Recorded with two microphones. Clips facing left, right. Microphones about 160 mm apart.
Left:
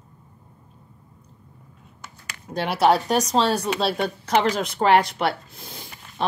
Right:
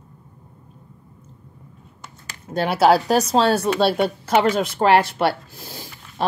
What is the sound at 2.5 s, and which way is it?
Speech, 5° right (ahead or behind).